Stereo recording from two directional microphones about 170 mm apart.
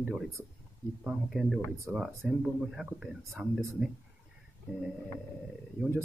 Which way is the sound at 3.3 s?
15° right (ahead or behind).